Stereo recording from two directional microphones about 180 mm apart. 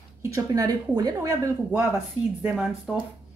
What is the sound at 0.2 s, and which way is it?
Speech, 20° right (ahead or behind).